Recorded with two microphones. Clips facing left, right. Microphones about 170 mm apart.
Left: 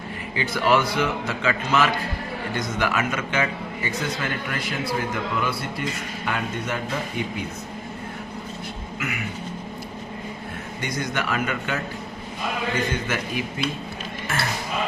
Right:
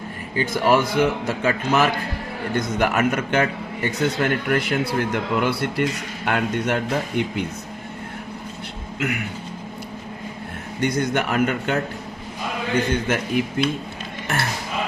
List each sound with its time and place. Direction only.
0.3 s a man's voice: 45° right (ahead or behind); by 7.4 s 70° right (ahead or behind)
10.8 s a man's voice: 55° right (ahead or behind)
13.1 s a man's voice: 55° right (ahead or behind)